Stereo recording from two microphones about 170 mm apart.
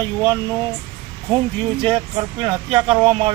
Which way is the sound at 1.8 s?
30° right (ahead or behind).